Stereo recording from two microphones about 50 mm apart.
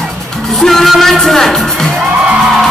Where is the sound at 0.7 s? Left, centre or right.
Centre.